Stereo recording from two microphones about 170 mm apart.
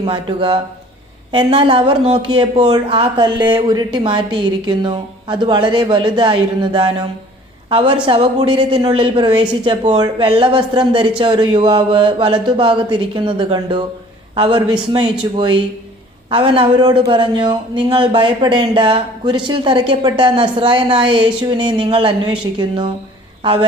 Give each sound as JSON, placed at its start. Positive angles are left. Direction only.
{"t": 0.0, "sound": "a man's voice", "side_deg": -30}